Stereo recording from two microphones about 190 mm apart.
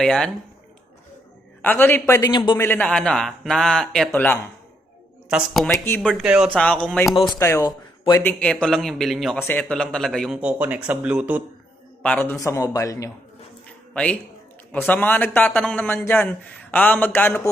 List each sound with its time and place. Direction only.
0.0 s speech: 5° left (ahead or behind)
1.6 s a man's voice: 10° left (ahead or behind)
2.6 s speech: 10° left (ahead or behind)
5.6 s a man's voice: 10° left (ahead or behind)
6.0 s speech: centre (ahead or behind)
6.5 s speech: 5° left (ahead or behind)
7.3 s a man's voice: 15° left (ahead or behind); by 11.4 s 5° right (ahead or behind)
12.0 s a man's voice: 10° left (ahead or behind)
13.9 s a man's voice: 5° left (ahead or behind)